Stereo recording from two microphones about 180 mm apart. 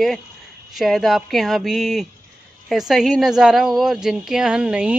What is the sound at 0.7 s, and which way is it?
Speech, centre (ahead or behind).